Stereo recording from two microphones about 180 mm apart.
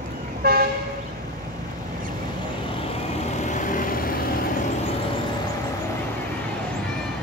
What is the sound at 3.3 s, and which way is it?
Vehicle, 45° left (ahead or behind).